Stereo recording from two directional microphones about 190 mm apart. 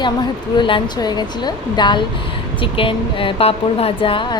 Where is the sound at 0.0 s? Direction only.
25° left (ahead or behind).